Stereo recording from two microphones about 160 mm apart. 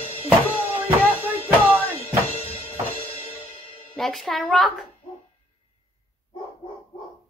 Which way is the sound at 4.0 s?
Centre (ahead or behind).